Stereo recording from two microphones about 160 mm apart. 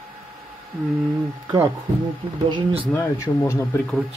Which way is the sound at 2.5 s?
35° right (ahead or behind).